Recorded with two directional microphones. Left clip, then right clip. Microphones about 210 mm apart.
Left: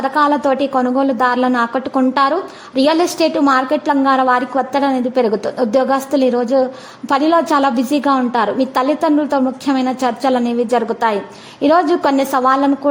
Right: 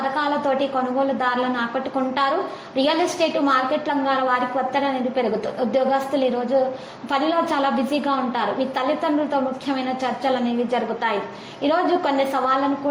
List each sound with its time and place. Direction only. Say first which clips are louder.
0.2 s a woman's voice: left 9 dB; 40° left (ahead or behind)